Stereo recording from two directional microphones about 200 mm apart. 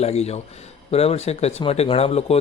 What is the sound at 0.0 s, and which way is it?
Speech, 30° left (ahead or behind).